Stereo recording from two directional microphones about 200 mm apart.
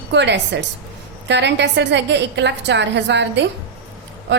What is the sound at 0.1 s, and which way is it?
A woman's voice, 60° right (ahead or behind).